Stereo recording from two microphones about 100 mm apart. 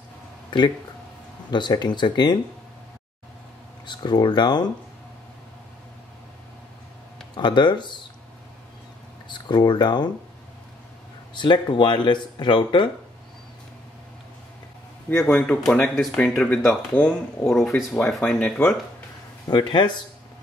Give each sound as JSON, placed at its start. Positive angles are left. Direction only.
{"t": 0.5, "sound": "speech", "side_deg": 50}
{"t": 3.8, "sound": "speech", "side_deg": 45}
{"t": 7.3, "sound": "speech", "side_deg": 50}
{"t": 9.3, "sound": "speech", "side_deg": 50}
{"t": 11.3, "sound": "speech", "side_deg": 50}
{"t": 15.3, "sound": "speech", "side_deg": 10}
{"t": 17.9, "sound": "speech", "side_deg": 15}
{"t": 19.4, "sound": "speech", "side_deg": 50}